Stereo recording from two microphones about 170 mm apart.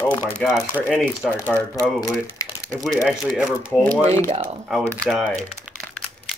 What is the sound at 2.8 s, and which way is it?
Speech, centre (ahead or behind).